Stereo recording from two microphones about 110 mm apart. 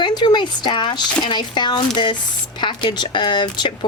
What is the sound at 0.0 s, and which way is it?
Speech, 40° left (ahead or behind).